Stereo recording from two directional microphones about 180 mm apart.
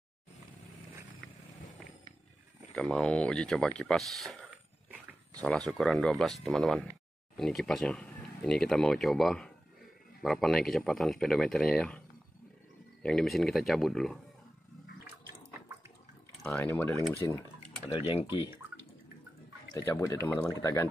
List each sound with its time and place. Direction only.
2.7 s speech: 5° left (ahead or behind)
13.0 s speech: centre (ahead or behind)
16.4 s speech: 10° left (ahead or behind)
19.7 s speech: 20° left (ahead or behind)